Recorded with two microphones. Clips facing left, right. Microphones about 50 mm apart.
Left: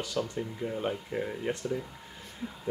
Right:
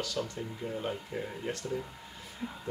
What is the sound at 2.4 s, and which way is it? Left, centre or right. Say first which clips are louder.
Speech: even; centre.